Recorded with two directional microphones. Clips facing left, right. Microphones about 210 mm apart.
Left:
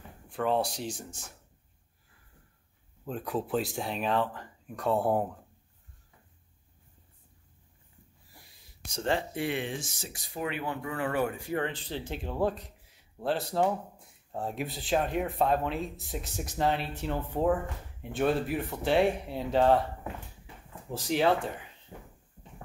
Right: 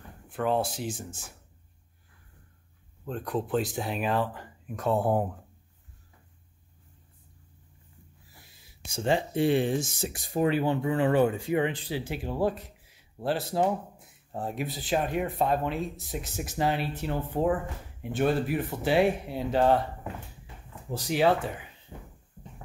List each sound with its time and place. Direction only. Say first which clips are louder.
0.3 s speech: right 1 dB; centre (ahead or behind)
3.1 s speech: right 2 dB; 5° left (ahead or behind)
8.3 s a sound: right 1 dB; centre (ahead or behind)
9.3 s speech: right 8 dB; 30° right (ahead or behind)
9.9 s speech: right 10 dB; 55° right (ahead or behind)
10.4 s speech: right 8 dB; 30° right (ahead or behind); by 21.3 s 5° right (ahead or behind)